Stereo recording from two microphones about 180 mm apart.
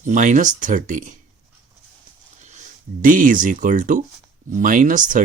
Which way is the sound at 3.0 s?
50° right (ahead or behind).